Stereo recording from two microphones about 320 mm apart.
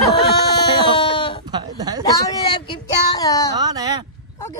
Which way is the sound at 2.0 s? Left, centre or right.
Centre.